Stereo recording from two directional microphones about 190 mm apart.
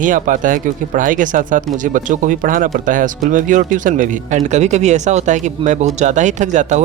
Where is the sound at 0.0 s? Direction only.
45° right (ahead or behind).